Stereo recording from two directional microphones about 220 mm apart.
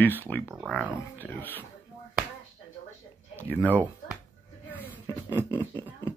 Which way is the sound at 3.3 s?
5° left (ahead or behind).